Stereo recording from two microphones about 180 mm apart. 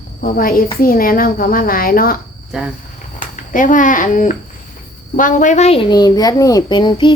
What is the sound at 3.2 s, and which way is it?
A woman's voice, 45° left (ahead or behind).